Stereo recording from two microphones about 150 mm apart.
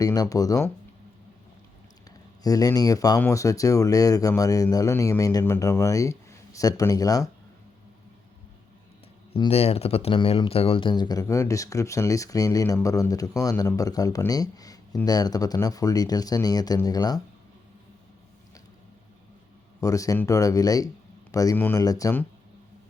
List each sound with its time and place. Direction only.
0.0 s speech: 25° left (ahead or behind)
2.0 s speech: 25° left (ahead or behind)
9.3 s speech: 40° left (ahead or behind)
19.8 s speech: 20° left (ahead or behind)